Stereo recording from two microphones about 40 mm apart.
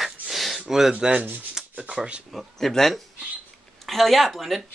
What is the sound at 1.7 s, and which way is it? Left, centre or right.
Speech, right.